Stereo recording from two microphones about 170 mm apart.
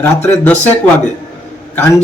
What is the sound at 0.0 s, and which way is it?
Speech, 10° left (ahead or behind).